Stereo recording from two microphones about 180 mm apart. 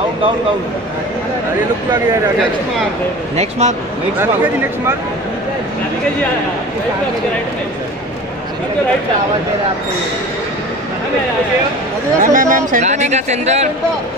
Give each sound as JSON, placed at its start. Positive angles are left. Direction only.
{"t": 3.3, "sound": "speech", "side_deg": -40}
{"t": 12.2, "sound": "speech", "side_deg": -45}